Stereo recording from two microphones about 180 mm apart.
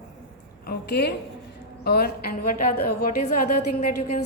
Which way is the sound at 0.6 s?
60° left (ahead or behind).